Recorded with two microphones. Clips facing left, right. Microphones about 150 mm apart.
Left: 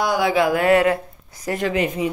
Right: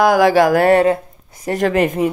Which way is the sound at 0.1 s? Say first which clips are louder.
Right 7 dB; 90° right.